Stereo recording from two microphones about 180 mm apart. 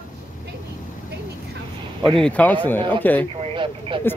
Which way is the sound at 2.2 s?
5° left (ahead or behind).